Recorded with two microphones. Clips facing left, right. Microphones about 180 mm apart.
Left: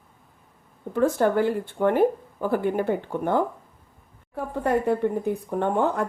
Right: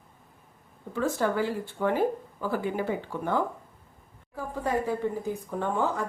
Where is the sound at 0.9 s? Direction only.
55° left (ahead or behind).